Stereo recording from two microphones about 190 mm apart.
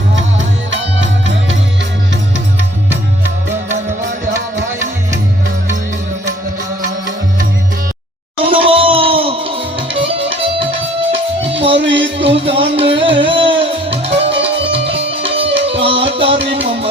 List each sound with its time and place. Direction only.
0.7 s music: 75° right (ahead or behind)
8.4 s music: 30° right (ahead or behind)
11.8 s music: 75° right (ahead or behind)
12.2 s music: 30° right (ahead or behind)